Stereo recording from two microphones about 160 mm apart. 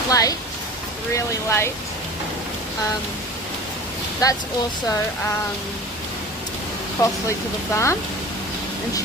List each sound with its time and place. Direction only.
0.1 s a sound: 20° left (ahead or behind)
1.1 s speech: 15° left (ahead or behind)
4.2 s speech: 25° left (ahead or behind)
7.0 s speech: 20° left (ahead or behind)